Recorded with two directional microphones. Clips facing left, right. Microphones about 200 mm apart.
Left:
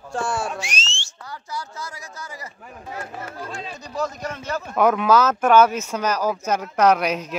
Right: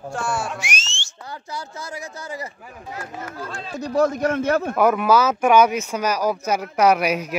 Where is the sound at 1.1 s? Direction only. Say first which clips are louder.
Right 1 dB; 25° right (ahead or behind).